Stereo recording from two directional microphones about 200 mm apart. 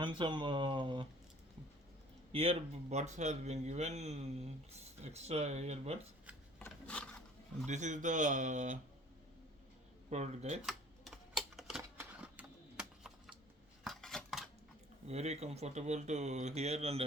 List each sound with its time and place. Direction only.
0.0 s speech: 25° right (ahead or behind)
2.3 s speech: 30° right (ahead or behind)
6.7 s a sound: 5° left (ahead or behind)
7.7 s speech: 35° right (ahead or behind)
10.1 s speech: 35° right (ahead or behind)
10.7 s typewriter: centre (ahead or behind)
13.8 s dishes: centre (ahead or behind)
15.0 s speech: 30° right (ahead or behind)